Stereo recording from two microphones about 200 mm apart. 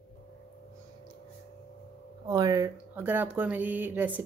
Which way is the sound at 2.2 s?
20° right (ahead or behind).